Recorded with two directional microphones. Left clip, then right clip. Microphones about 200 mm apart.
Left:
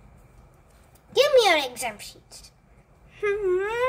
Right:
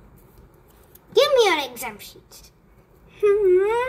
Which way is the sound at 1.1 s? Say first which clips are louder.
Right 1 dB; 15° left (ahead or behind).